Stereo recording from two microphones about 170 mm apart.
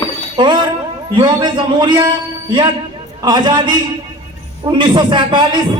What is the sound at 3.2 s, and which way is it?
A man's voice, 25° right (ahead or behind).